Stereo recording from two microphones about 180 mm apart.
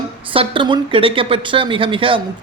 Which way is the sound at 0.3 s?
30° right (ahead or behind).